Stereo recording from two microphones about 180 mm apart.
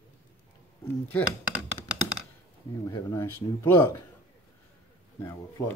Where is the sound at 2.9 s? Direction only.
15° left (ahead or behind).